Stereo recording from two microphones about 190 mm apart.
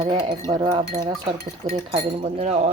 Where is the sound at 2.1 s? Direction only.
30° right (ahead or behind).